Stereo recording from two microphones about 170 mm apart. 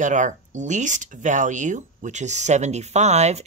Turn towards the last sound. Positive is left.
turn(degrees=-40)  # may be behind; listen again after turning